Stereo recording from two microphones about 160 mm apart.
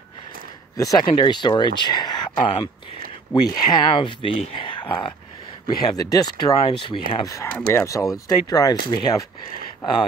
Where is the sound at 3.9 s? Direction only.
30° left (ahead or behind).